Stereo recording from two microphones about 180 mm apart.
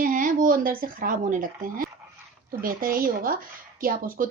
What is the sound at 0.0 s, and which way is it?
Speech, 50° right (ahead or behind).